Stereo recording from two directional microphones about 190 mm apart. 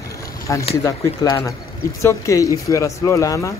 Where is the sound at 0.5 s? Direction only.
15° left (ahead or behind).